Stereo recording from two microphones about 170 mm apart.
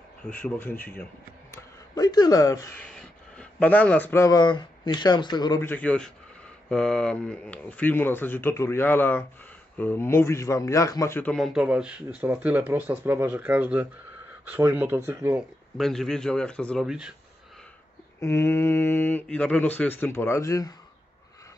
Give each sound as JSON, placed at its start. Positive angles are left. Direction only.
{"t": 0.3, "sound": "speech", "side_deg": 10}
{"t": 1.5, "sound": "speech", "side_deg": 20}
{"t": 2.8, "sound": "speech", "side_deg": 5}
{"t": 5.7, "sound": "speech", "side_deg": 10}
{"t": 11.3, "sound": "speech", "side_deg": 0}
{"t": 15.8, "sound": "speech", "side_deg": 0}
{"t": 18.2, "sound": "speech", "side_deg": 15}